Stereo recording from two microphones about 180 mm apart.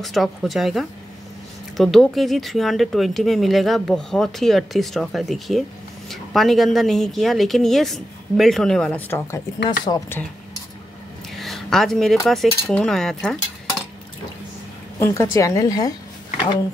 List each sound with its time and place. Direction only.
0.0 s a woman's voice: centre (ahead or behind)
11.3 s speech: centre (ahead or behind)
15.0 s a woman's voice: 15° left (ahead or behind)